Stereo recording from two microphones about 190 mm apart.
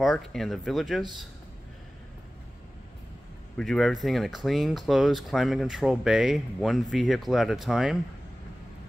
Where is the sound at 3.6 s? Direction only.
Centre (ahead or behind).